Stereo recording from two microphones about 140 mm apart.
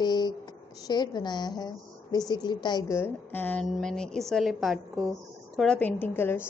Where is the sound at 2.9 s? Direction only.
15° left (ahead or behind).